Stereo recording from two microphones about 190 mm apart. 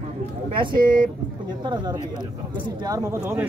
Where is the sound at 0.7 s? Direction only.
45° right (ahead or behind).